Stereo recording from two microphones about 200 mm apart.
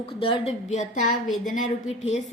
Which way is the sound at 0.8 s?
35° left (ahead or behind).